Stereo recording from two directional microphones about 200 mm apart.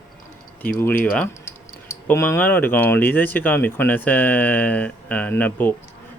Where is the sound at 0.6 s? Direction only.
10° left (ahead or behind).